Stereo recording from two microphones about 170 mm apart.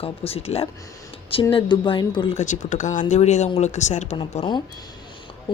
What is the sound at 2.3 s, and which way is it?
Speech, 45° left (ahead or behind).